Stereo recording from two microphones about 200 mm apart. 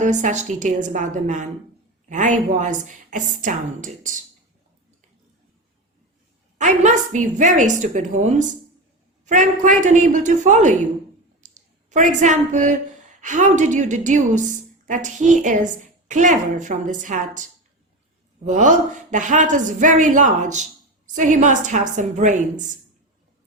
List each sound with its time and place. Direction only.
0.0 s a woman's voice: 35° right (ahead or behind)
6.6 s a woman's voice: 40° right (ahead or behind)
11.3 s a sound: 40° right (ahead or behind)
13.2 s a woman's voice: 40° right (ahead or behind)
18.4 s a woman's voice: 40° right (ahead or behind)